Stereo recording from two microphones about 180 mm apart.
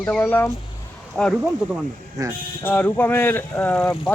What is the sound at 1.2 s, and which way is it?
Speech, centre (ahead or behind).